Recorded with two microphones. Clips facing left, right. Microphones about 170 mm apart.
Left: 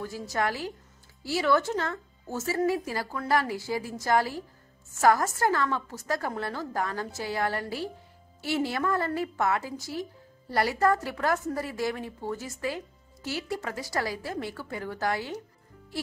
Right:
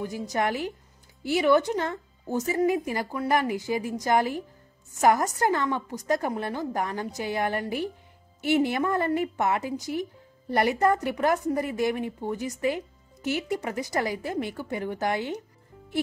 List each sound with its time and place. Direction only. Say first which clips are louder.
0.3 s a woman's voice: right 2 dB; 20° right (ahead or behind)